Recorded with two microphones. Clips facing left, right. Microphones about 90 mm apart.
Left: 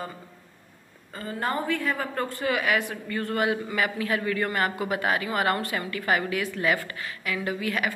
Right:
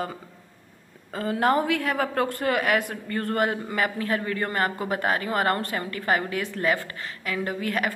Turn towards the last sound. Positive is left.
turn(degrees=-45)  # may be behind; listen again after turning